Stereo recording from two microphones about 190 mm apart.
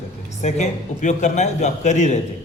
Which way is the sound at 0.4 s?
40° left (ahead or behind).